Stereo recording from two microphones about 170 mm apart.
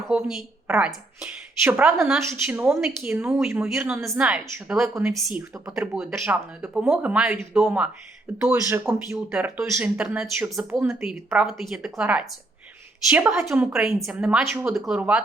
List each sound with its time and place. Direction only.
0.1 s speech: 5° right (ahead or behind)
5.5 s speech: 20° right (ahead or behind)
11.4 s speech: centre (ahead or behind)